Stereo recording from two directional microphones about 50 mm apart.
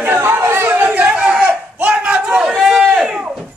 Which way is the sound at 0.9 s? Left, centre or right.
Right.